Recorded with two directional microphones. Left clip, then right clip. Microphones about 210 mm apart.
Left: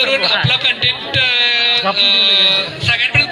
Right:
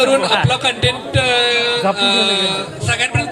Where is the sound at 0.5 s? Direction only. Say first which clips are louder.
Left 2 dB; 45° right (ahead or behind).